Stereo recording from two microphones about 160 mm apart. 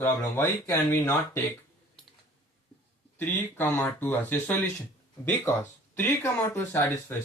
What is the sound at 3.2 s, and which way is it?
Speech, 10° left (ahead or behind).